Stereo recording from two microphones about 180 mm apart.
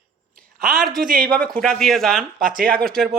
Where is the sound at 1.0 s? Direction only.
50° right (ahead or behind).